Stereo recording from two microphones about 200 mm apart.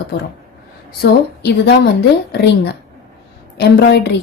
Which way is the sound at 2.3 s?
55° left (ahead or behind).